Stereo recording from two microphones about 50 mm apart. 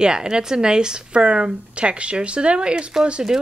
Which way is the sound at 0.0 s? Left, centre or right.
Centre.